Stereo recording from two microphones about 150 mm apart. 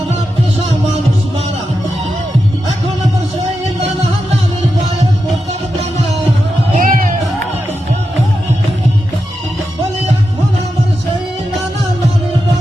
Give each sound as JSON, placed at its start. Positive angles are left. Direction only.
{"t": 6.7, "sound": "music", "side_deg": -65}